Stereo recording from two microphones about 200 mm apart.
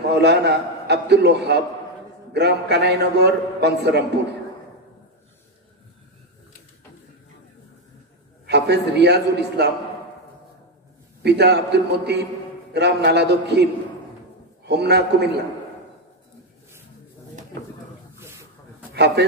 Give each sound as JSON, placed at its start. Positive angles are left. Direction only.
{"t": 0.1, "sound": "a man's voice", "side_deg": -55}
{"t": 8.5, "sound": "a man's voice", "side_deg": -55}
{"t": 11.2, "sound": "a man's voice", "side_deg": -55}
{"t": 14.7, "sound": "a man's voice", "side_deg": -55}
{"t": 18.2, "sound": "a sound", "side_deg": -15}
{"t": 18.9, "sound": "a man's voice", "side_deg": -55}